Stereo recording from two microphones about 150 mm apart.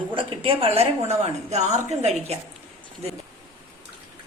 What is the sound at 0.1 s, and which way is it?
A woman's voice, 35° right (ahead or behind).